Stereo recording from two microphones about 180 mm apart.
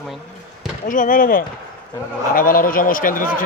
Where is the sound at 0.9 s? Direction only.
50° left (ahead or behind).